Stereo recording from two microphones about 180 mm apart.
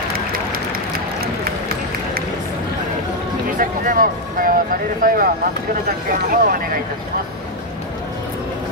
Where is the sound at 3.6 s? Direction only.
50° right (ahead or behind).